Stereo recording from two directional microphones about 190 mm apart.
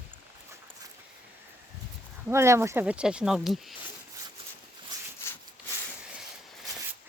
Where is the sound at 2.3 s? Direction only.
15° right (ahead or behind).